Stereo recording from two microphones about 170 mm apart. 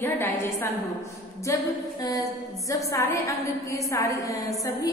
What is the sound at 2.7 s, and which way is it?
A woman's voice, 15° left (ahead or behind).